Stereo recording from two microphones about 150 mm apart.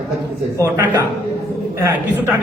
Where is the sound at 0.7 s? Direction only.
10° right (ahead or behind).